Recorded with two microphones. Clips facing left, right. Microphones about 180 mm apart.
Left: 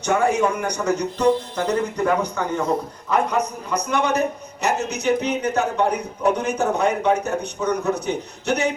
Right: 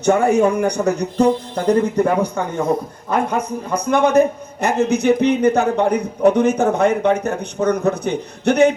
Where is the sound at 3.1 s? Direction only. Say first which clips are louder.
Right 2 dB; 50° right (ahead or behind).